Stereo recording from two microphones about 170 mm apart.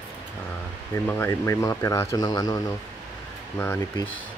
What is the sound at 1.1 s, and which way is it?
Speech, 15° left (ahead or behind).